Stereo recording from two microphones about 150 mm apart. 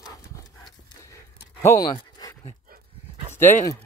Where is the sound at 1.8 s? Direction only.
30° left (ahead or behind).